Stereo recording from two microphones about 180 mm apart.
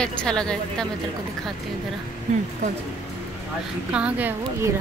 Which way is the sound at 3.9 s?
10° right (ahead or behind).